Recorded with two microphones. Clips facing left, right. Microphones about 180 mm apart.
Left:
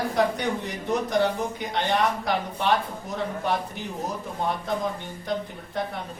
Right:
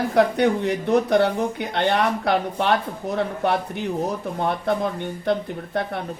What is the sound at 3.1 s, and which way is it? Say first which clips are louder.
Speech: right 4 dB; 60° right (ahead or behind).